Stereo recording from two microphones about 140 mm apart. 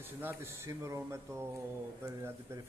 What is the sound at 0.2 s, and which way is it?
Speech, 15° right (ahead or behind).